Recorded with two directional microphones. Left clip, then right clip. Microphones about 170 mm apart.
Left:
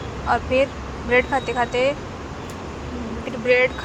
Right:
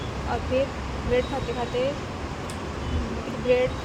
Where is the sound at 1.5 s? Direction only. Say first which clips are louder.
Left 8 dB; 20° left (ahead or behind).